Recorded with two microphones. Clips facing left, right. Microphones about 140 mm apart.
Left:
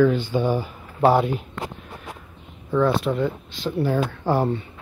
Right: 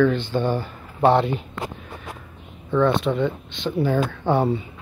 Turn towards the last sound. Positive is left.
turn(degrees=0)  # may be behind; listen again after turning